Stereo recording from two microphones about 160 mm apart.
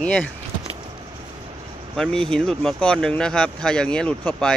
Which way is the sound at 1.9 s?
5° left (ahead or behind).